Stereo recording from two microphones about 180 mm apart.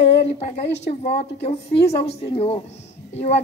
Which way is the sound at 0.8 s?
35° left (ahead or behind).